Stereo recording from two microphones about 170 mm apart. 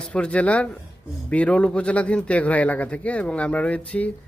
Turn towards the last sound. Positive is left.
turn(degrees=10)  # may be behind; listen again after turning